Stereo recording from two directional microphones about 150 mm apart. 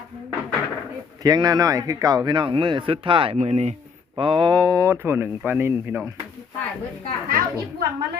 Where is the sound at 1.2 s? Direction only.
25° right (ahead or behind).